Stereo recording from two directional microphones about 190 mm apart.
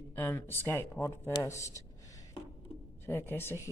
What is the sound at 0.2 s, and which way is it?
Speech, 10° left (ahead or behind).